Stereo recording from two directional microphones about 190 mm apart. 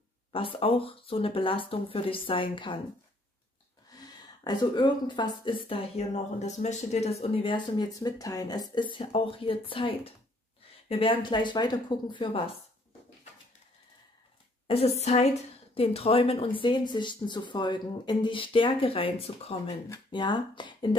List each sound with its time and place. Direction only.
0.3 s a woman's voice: 30° left (ahead or behind)
4.5 s a woman's voice: 20° left (ahead or behind)
14.7 s a woman's voice: 35° left (ahead or behind)